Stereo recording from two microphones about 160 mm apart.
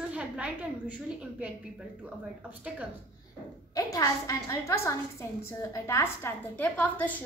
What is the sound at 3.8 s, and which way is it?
A woman's voice, 20° left (ahead or behind).